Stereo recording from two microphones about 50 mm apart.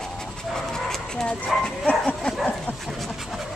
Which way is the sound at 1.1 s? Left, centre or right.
Centre.